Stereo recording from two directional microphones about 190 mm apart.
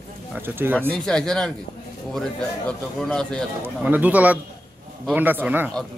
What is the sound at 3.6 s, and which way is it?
A man's voice, 10° right (ahead or behind).